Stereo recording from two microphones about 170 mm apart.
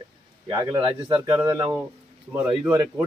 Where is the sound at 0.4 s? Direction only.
25° right (ahead or behind).